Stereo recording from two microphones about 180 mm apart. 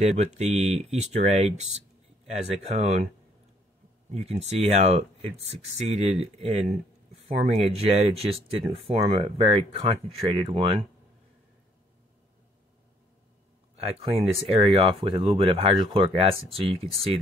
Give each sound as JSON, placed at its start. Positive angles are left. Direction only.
{"t": 0.0, "sound": "speech", "side_deg": -40}
{"t": 4.1, "sound": "speech", "side_deg": -35}
{"t": 13.7, "sound": "speech", "side_deg": -30}